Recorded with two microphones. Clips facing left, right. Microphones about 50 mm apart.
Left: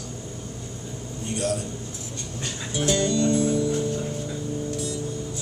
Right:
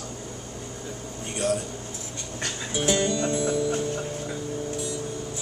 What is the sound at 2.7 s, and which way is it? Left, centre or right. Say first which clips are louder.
Music: left 1 dB; centre.